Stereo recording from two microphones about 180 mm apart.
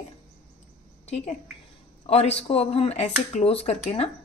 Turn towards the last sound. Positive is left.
turn(degrees=35)  # may be behind; listen again after turning